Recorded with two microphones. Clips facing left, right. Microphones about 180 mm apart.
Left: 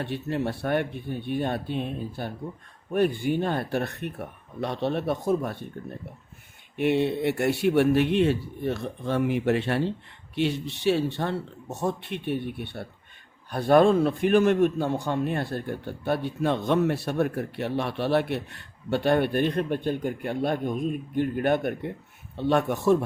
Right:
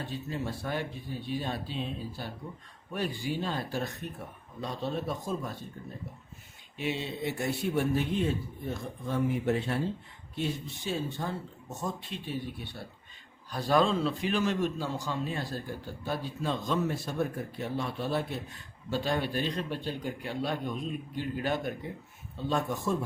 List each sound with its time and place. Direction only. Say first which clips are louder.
0.0 s a man's voice: left 7 dB; 70° left (ahead or behind)
6.7 s a man's voice: left 10 dB; 60° left (ahead or behind)